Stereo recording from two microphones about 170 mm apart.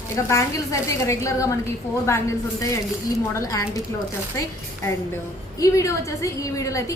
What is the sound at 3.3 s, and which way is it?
Speech, 20° left (ahead or behind).